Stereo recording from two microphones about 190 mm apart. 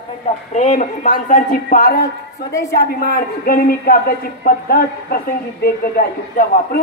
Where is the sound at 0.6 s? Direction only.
40° left (ahead or behind).